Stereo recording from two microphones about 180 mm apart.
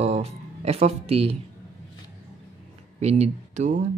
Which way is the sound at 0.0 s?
35° right (ahead or behind).